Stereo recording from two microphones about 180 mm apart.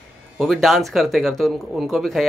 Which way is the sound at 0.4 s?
Centre (ahead or behind).